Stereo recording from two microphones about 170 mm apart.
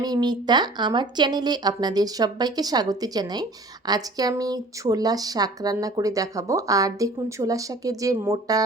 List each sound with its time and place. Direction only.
0.0 s speech: 25° right (ahead or behind)